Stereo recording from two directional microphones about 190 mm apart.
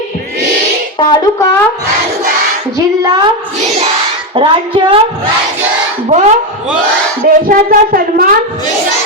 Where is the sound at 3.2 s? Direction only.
35° right (ahead or behind).